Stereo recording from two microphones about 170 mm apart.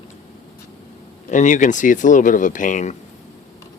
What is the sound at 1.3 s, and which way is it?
Speech, 45° left (ahead or behind).